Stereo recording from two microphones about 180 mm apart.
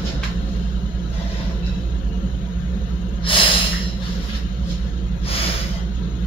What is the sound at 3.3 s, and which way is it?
Snort, 30° left (ahead or behind).